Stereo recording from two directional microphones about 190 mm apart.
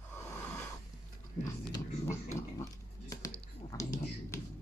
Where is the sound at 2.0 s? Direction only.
15° left (ahead or behind).